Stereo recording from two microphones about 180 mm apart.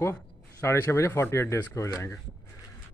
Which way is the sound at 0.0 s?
15° left (ahead or behind).